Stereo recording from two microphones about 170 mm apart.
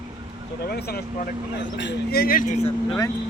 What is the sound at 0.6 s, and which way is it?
Speech, 70° left (ahead or behind).